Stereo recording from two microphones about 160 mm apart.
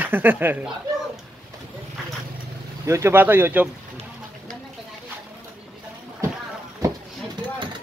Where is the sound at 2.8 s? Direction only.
15° right (ahead or behind).